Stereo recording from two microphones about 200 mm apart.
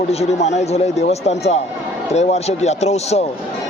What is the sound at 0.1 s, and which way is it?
Speech, 35° left (ahead or behind).